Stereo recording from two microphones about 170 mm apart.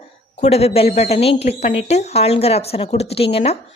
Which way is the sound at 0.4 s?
35° left (ahead or behind).